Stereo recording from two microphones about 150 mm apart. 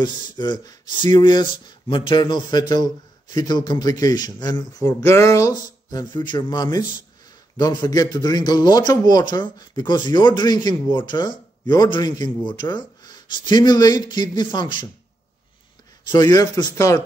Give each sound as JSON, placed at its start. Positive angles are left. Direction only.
{"t": 0.0, "sound": "speech", "side_deg": 30}
{"t": 16.1, "sound": "speech", "side_deg": 25}